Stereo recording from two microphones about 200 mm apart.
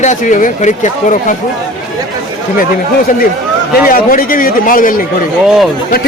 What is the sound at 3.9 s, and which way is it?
A man's voice, 45° left (ahead or behind).